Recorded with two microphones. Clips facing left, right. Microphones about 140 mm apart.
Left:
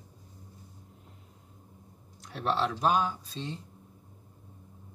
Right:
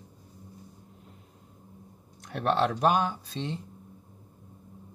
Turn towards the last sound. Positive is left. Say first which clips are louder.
# right 3 dB
turn(degrees=-65)  # may be behind; listen again after turning